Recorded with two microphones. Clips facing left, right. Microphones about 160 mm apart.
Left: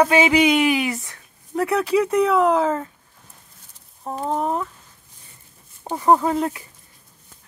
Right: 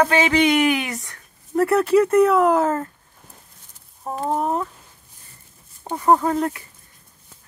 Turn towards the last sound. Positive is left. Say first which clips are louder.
# even
turn(degrees=5)  # may be behind; listen again after turning